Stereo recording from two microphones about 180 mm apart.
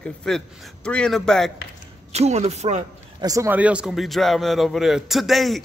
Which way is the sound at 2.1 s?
35° right (ahead or behind).